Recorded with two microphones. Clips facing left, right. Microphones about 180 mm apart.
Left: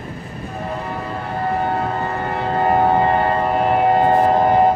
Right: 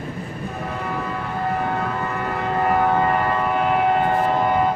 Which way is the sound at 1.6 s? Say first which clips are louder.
Left 3 dB; 35° left (ahead or behind).